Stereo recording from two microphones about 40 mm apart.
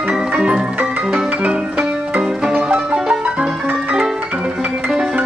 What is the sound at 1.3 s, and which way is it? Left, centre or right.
Music, right.